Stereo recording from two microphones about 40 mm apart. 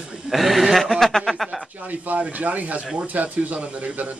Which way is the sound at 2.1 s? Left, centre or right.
Right.